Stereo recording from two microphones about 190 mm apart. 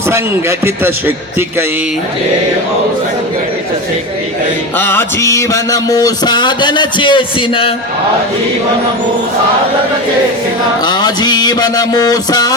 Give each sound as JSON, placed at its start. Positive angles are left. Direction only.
{"t": 0.1, "sound": "a man's voice", "side_deg": -15}
{"t": 4.8, "sound": "music", "side_deg": 10}
{"t": 10.8, "sound": "music", "side_deg": 20}